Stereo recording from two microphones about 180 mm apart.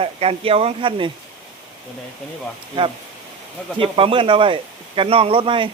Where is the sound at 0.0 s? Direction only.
30° right (ahead or behind).